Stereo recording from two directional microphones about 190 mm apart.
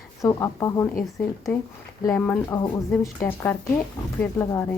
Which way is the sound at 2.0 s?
15° left (ahead or behind).